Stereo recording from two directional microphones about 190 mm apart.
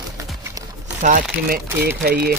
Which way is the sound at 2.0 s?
55° right (ahead or behind).